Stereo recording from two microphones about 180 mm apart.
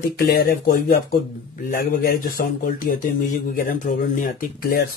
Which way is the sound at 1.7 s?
50° left (ahead or behind).